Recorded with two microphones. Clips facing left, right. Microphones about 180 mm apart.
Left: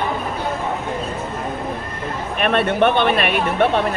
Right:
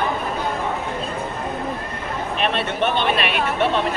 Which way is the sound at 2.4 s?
55° left (ahead or behind).